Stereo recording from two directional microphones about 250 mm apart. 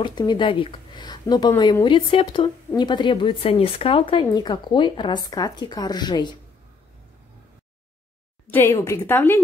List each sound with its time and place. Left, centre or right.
0.0 s speech: centre
8.5 s speech: centre